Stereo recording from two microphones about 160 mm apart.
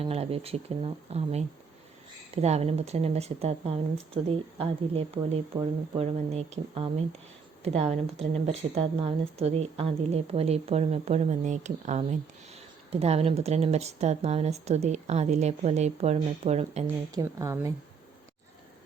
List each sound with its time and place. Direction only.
0.0 s speech: 40° right (ahead or behind)
17.1 s speech: 20° right (ahead or behind)